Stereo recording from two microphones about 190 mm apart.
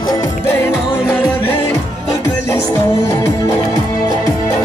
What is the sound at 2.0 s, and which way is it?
Music, 15° left (ahead or behind).